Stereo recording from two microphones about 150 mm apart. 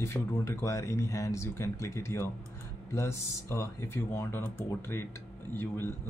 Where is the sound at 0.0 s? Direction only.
20° left (ahead or behind).